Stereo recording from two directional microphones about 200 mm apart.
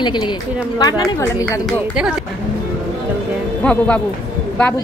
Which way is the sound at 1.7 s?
5° right (ahead or behind).